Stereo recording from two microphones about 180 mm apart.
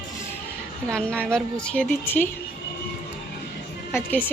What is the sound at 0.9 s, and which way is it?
A woman's voice, 5° left (ahead or behind).